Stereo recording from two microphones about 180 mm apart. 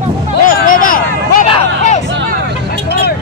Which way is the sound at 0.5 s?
50° left (ahead or behind).